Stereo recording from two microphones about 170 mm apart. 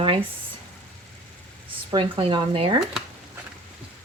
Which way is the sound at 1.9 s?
30° right (ahead or behind).